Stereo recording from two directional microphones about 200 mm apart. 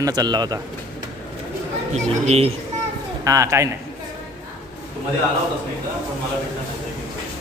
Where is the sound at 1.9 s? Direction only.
30° right (ahead or behind).